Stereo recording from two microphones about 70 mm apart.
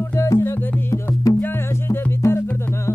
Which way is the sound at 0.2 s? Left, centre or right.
Left.